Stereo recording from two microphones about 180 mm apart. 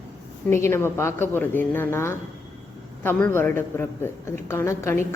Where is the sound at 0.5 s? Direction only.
15° left (ahead or behind).